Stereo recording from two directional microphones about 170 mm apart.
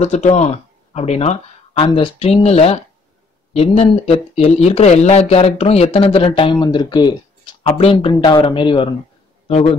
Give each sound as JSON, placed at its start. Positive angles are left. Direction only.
{"t": 0.0, "sound": "speech", "side_deg": 40}